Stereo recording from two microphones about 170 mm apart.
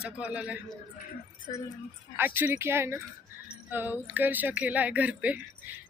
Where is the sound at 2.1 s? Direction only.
10° right (ahead or behind).